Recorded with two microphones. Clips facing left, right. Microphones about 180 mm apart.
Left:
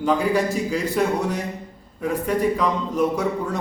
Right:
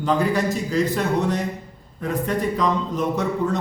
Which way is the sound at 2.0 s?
10° left (ahead or behind).